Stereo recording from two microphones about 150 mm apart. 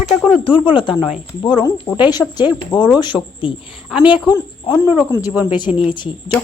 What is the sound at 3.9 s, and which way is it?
Speech, 5° right (ahead or behind).